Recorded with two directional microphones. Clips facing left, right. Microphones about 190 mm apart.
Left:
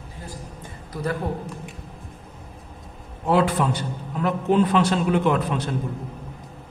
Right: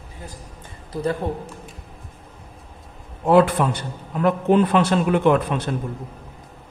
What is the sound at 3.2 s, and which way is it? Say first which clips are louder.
A man's voice: right 4 dB; 55° right (ahead or behind).